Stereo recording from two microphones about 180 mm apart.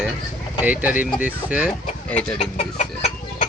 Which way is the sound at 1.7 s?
5° left (ahead or behind).